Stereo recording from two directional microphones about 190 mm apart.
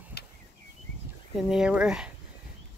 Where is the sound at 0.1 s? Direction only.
55° left (ahead or behind).